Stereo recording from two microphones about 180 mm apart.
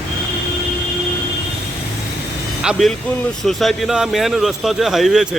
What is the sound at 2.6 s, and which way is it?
Speech, centre (ahead or behind).